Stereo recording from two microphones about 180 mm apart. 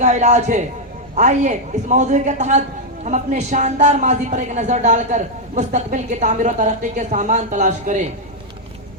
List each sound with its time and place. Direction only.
0.0 s a man's voice: 40° right (ahead or behind)